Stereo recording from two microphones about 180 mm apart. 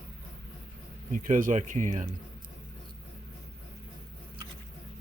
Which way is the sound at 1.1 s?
45° right (ahead or behind).